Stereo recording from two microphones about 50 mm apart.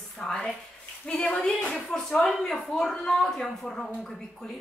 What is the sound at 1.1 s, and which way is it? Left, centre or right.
Speech, left.